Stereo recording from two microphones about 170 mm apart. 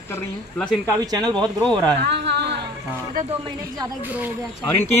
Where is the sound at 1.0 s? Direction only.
25° right (ahead or behind).